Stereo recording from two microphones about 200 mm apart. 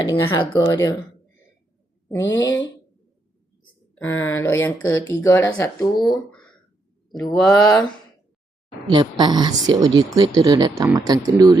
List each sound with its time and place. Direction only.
0.6 s speech: 15° left (ahead or behind)
2.0 s speech: 15° left (ahead or behind)
2.3 s speech: 65° left (ahead or behind)
3.9 s speech: 10° left (ahead or behind)
7.3 s speech: 20° left (ahead or behind)
8.9 s speech: 20° right (ahead or behind)